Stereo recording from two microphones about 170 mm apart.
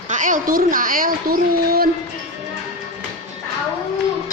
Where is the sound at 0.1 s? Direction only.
50° right (ahead or behind).